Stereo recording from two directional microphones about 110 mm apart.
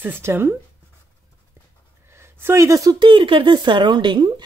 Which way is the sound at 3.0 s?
50° right (ahead or behind).